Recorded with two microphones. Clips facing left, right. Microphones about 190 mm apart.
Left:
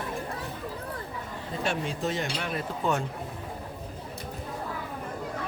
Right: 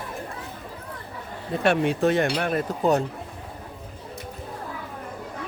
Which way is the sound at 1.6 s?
65° right (ahead or behind).